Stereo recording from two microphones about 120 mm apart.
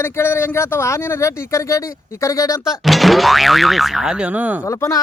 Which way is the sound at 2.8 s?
Centre (ahead or behind).